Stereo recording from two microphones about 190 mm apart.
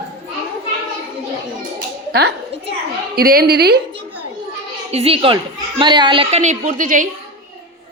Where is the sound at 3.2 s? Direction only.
55° right (ahead or behind).